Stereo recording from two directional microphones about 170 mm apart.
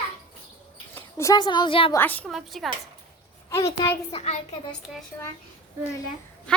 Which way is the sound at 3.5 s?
15° left (ahead or behind).